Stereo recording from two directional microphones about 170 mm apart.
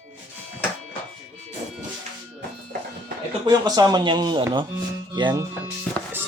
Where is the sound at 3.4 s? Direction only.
25° right (ahead or behind).